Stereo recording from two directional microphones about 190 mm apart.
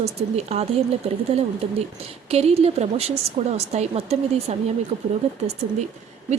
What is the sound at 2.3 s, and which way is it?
Speech, 30° right (ahead or behind).